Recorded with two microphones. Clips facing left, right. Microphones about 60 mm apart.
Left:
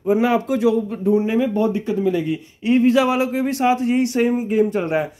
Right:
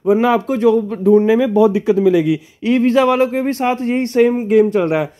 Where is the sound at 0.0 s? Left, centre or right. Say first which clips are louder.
Right 4 dB; right.